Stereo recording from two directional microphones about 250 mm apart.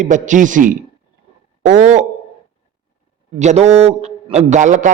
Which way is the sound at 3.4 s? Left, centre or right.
Right.